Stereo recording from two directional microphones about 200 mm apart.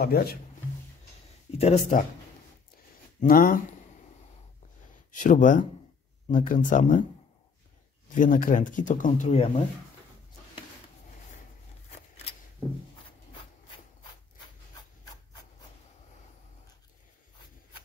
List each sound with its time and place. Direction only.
0.0 s speech: 50° left (ahead or behind)
1.6 s speech: 35° left (ahead or behind)
3.2 s speech: 45° left (ahead or behind)
5.1 s speech: 40° left (ahead or behind)
8.1 s speech: 40° left (ahead or behind)